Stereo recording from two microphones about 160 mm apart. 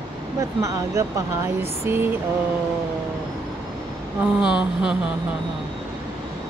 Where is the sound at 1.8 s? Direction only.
15° right (ahead or behind).